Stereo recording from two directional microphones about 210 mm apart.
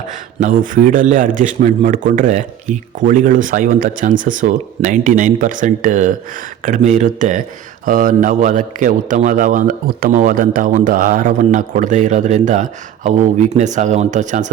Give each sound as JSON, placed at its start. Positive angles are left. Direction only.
{"t": 0.3, "sound": "a man's voice", "side_deg": -40}